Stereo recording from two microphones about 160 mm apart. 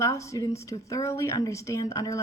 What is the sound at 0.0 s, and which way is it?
Speech, 20° left (ahead or behind).